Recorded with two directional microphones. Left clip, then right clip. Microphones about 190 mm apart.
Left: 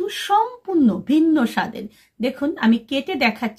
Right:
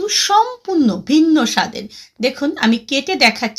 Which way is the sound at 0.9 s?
15° right (ahead or behind).